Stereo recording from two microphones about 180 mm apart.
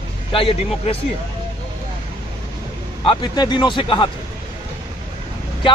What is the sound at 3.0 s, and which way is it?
Speech, 25° left (ahead or behind).